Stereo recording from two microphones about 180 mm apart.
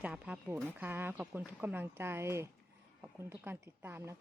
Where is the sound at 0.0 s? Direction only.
5° right (ahead or behind).